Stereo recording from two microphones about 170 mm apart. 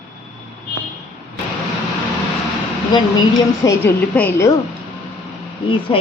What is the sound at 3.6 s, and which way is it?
Speech, 15° left (ahead or behind).